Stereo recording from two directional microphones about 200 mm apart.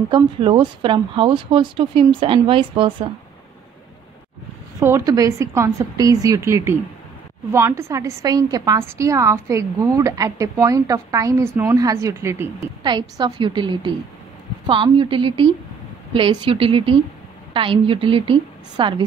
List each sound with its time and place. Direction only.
0.1 s speech: 25° right (ahead or behind)
4.7 s a woman's voice: 15° right (ahead or behind)